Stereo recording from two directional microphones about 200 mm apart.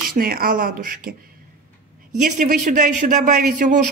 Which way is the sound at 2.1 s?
40° right (ahead or behind).